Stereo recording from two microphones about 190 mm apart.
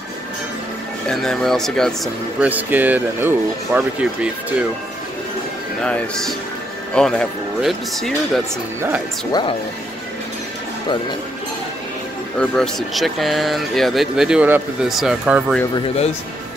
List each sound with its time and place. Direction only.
1.0 s speech: centre (ahead or behind)
2.4 s speech: 10° right (ahead or behind)
5.8 s speech: 5° left (ahead or behind)
9.3 s speech: 25° left (ahead or behind)
12.4 s speech: centre (ahead or behind)